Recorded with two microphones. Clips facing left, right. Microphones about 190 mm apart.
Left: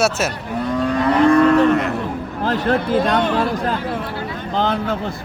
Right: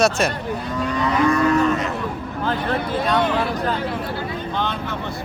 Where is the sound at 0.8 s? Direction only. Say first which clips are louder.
Left 4 dB; 55° left (ahead or behind).